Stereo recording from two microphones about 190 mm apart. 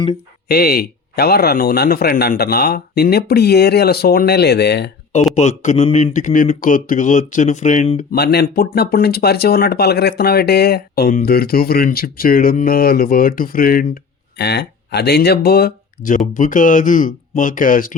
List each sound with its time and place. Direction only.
0.4 s speech: 55° left (ahead or behind)
5.3 s speech: 40° left (ahead or behind)
8.1 s speech: 60° left (ahead or behind)